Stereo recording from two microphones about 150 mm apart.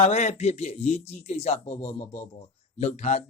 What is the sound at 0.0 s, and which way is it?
Speech, 45° left (ahead or behind).